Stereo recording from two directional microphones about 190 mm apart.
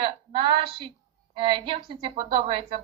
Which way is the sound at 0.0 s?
25° right (ahead or behind).